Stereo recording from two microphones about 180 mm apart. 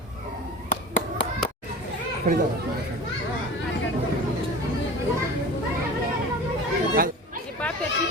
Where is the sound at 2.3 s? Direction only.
50° right (ahead or behind).